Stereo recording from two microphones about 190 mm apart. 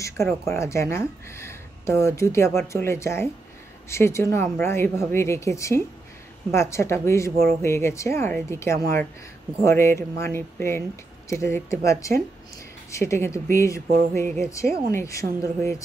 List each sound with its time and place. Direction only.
0.0 s speech: 15° left (ahead or behind)